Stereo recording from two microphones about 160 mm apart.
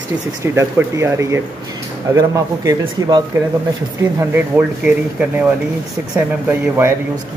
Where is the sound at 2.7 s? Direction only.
25° right (ahead or behind).